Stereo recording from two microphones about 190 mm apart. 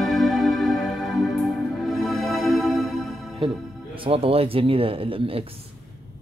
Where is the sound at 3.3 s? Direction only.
25° right (ahead or behind).